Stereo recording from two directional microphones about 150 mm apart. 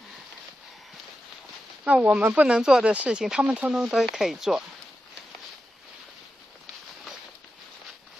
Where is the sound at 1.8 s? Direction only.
10° right (ahead or behind).